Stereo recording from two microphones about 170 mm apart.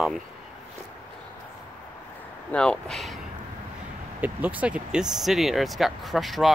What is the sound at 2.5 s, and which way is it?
Speech, 5° left (ahead or behind).